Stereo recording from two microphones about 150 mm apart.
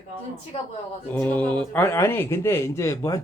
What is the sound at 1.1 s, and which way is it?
Speech, 10° left (ahead or behind).